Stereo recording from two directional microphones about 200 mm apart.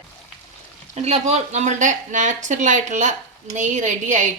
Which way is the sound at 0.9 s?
35° right (ahead or behind).